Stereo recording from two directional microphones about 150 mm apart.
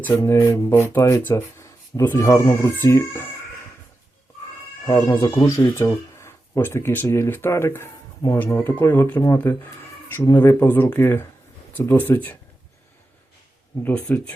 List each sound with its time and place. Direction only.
0.0 s speech: 15° left (ahead or behind)
4.9 s speech: 25° left (ahead or behind)
13.8 s speech: 5° left (ahead or behind)